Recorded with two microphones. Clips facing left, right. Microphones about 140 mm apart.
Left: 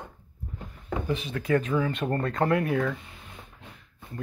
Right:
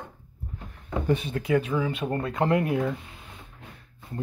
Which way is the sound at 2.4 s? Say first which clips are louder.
Right 1 dB; 20° right (ahead or behind).